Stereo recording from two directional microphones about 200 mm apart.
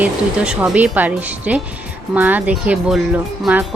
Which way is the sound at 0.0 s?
5° right (ahead or behind).